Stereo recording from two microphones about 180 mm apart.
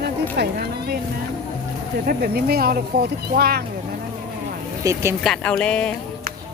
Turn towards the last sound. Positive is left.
turn(degrees=5)  # may be behind; listen again after turning